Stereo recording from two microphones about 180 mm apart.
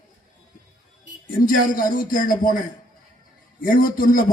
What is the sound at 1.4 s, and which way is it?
Speech, 50° left (ahead or behind).